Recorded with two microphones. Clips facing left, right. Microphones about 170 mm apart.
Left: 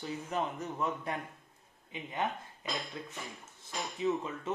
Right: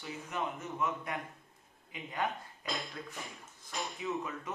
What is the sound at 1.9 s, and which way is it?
Speech, 20° left (ahead or behind).